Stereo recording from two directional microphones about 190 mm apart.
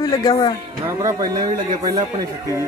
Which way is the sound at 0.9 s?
15° right (ahead or behind).